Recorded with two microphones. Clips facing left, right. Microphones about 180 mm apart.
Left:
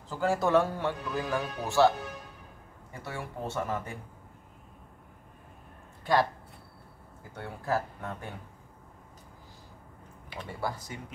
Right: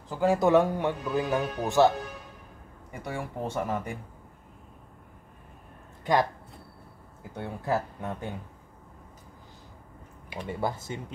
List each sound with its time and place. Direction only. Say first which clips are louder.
0.1 s speech: right 4 dB; 15° right (ahead or behind)
2.9 s speech: right 4 dB; 15° right (ahead or behind)
6.1 s speech: right 1 dB; 20° right (ahead or behind)
7.3 s speech: right 2 dB; 20° right (ahead or behind)
10.3 s speech: right 4 dB; 20° right (ahead or behind)